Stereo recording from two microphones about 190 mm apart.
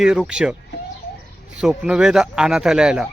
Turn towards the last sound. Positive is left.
turn(degrees=-5)  # may be behind; listen again after turning